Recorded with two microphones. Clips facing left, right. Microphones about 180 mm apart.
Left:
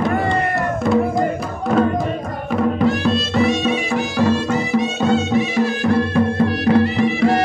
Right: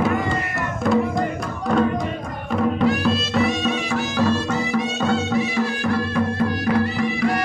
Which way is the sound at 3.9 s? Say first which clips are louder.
Left 2 dB; 15° left (ahead or behind).